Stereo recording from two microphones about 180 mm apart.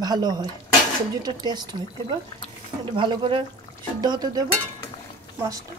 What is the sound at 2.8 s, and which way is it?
Speech, 25° right (ahead or behind).